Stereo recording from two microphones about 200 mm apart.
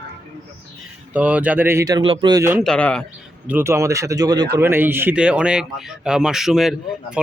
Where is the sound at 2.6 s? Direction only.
5° left (ahead or behind).